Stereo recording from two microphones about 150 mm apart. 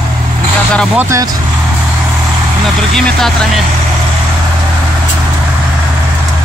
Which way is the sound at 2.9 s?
Centre (ahead or behind).